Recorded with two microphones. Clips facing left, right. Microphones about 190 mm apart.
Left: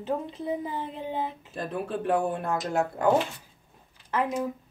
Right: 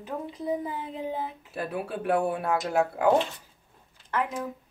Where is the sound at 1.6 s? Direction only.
10° right (ahead or behind).